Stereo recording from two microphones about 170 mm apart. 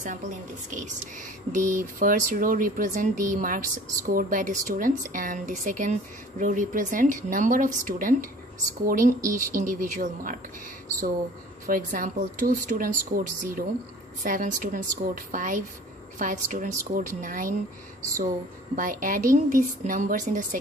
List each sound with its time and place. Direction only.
0.0 s speech: 45° right (ahead or behind)
11.6 s speech: 55° right (ahead or behind)
18.8 s speech: 50° right (ahead or behind)